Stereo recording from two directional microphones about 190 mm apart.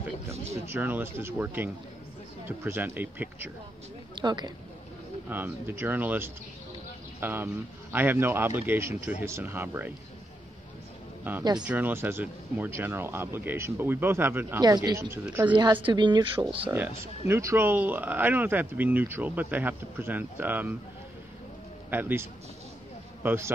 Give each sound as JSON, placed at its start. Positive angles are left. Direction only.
{"t": 0.7, "sound": "speech", "side_deg": -10}
{"t": 4.1, "sound": "speech", "side_deg": -20}
{"t": 5.3, "sound": "speech", "side_deg": -10}
{"t": 11.6, "sound": "speech", "side_deg": -10}
{"t": 15.5, "sound": "speech", "side_deg": -25}
{"t": 16.7, "sound": "speech", "side_deg": -10}
{"t": 21.9, "sound": "speech", "side_deg": -10}